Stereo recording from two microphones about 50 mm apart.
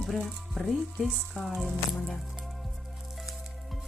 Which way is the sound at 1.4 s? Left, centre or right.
Centre.